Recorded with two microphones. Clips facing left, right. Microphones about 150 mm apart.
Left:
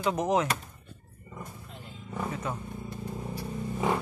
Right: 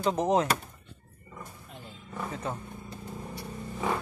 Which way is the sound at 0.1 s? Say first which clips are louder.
Right 1 dB; 30° right (ahead or behind).